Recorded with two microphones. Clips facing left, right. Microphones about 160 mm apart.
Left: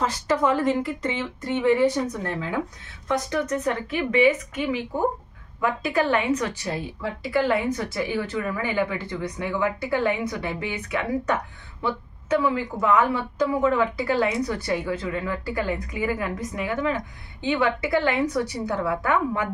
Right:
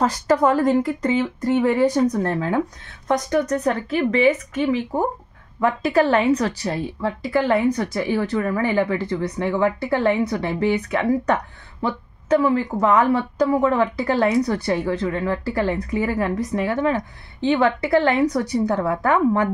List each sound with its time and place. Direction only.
0.0 s a woman's voice: 40° right (ahead or behind)